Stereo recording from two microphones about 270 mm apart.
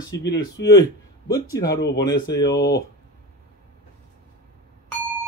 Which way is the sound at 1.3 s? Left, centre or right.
Centre.